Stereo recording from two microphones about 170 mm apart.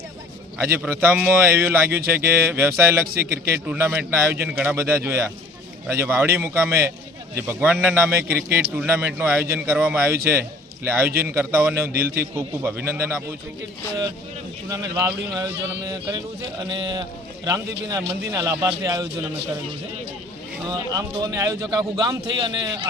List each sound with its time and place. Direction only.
0.8 s speech: 10° right (ahead or behind)
2.0 s a man's voice: 65° right (ahead or behind)
2.3 s speech: 10° right (ahead or behind)
3.0 s a man's voice: 65° right (ahead or behind)
3.5 s speech: 15° right (ahead or behind)
8.3 s a man's voice: 65° right (ahead or behind)
8.5 s speech: 10° right (ahead or behind)
14.9 s a man's voice: 15° right (ahead or behind)
20.7 s a man's voice: 25° right (ahead or behind)